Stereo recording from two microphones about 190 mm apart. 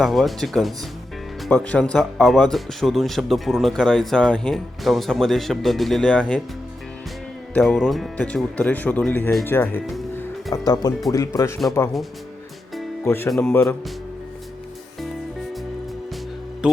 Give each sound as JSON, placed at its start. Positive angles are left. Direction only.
{"t": 0.0, "sound": "speech", "side_deg": 0}
{"t": 7.5, "sound": "speech", "side_deg": 5}
{"t": 13.1, "sound": "speech", "side_deg": 15}
{"t": 16.6, "sound": "music", "side_deg": -5}